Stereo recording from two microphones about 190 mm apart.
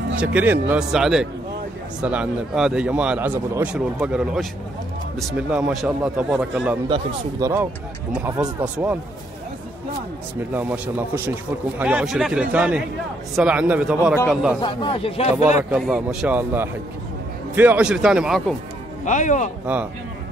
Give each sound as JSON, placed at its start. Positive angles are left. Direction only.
{"t": 0.2, "sound": "a man's voice", "side_deg": -5}
{"t": 5.5, "sound": "a man's voice", "side_deg": 0}
{"t": 6.9, "sound": "a man's voice", "side_deg": -20}
{"t": 8.1, "sound": "speech", "side_deg": -5}
{"t": 10.5, "sound": "a man's voice", "side_deg": -10}
{"t": 14.6, "sound": "speech", "side_deg": 25}
{"t": 15.7, "sound": "a man's voice", "side_deg": -5}
{"t": 19.0, "sound": "speech", "side_deg": 40}
{"t": 19.6, "sound": "speech", "side_deg": -10}